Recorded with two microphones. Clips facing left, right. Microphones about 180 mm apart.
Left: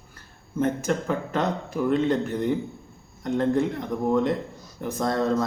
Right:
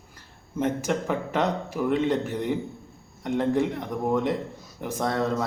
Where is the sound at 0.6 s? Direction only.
10° right (ahead or behind).